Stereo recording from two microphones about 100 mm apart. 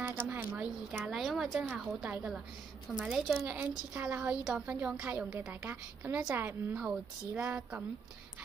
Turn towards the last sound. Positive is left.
turn(degrees=-15)  # may be behind; listen again after turning